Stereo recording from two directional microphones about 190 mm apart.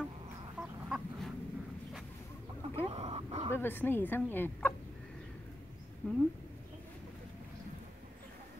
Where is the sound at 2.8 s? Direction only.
30° right (ahead or behind).